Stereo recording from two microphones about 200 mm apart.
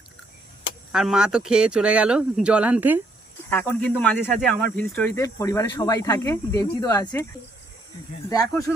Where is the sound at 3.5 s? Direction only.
10° left (ahead or behind).